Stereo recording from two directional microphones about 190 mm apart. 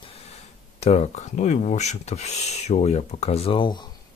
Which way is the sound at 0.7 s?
35° left (ahead or behind).